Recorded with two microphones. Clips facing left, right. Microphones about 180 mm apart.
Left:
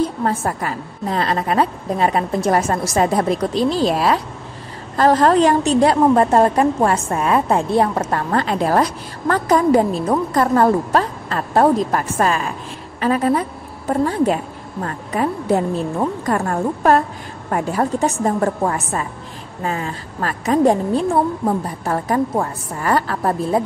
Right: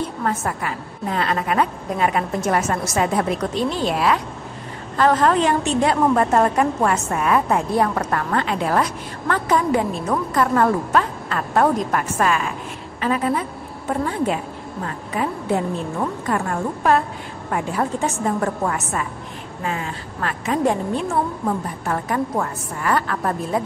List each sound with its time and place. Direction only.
0.2 s a woman's voice: 30° left (ahead or behind)
16.3 s a woman's voice: 40° left (ahead or behind)